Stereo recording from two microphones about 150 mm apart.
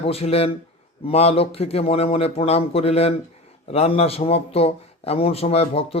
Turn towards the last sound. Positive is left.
turn(degrees=40)  # may be behind; listen again after turning